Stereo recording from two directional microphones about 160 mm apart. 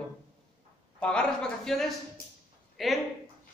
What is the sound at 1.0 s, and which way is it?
Speech, 5° left (ahead or behind).